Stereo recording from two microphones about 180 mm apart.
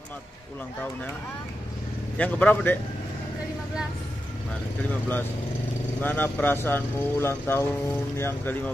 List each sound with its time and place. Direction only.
2.1 s speech: 10° left (ahead or behind)
5.9 s speech: 10° left (ahead or behind)